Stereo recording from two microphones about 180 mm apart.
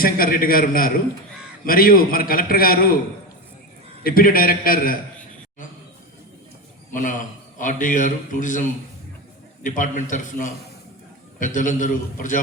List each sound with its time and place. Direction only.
0.0 s a man's voice: 55° left (ahead or behind)
4.0 s a man's voice: 55° left (ahead or behind)
6.9 s a man's voice: 45° left (ahead or behind)